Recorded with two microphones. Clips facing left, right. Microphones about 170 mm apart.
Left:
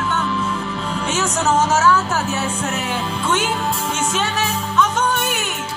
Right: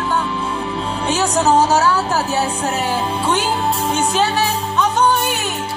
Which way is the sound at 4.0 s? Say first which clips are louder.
Right 6 dB; 35° right (ahead or behind).